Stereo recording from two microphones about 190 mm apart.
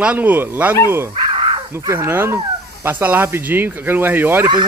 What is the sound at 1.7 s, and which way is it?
Speech, 15° right (ahead or behind).